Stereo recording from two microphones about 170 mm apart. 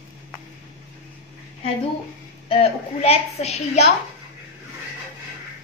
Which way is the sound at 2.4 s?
35° left (ahead or behind).